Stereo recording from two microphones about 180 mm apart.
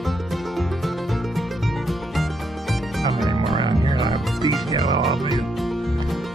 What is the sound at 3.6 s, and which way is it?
Music, 25° right (ahead or behind).